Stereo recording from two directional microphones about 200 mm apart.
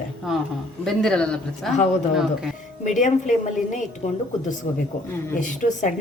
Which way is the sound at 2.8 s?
40° left (ahead or behind).